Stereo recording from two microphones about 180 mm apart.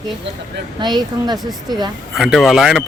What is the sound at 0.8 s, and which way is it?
A woman's voice, 25° right (ahead or behind).